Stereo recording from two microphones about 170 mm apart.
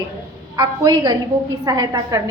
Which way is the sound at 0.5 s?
20° right (ahead or behind).